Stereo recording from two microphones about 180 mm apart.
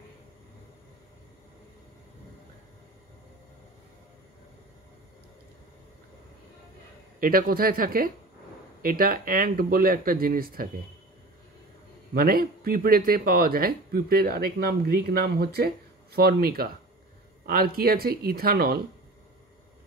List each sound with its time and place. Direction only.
7.2 s speech: 55° right (ahead or behind)
12.1 s speech: 55° right (ahead or behind)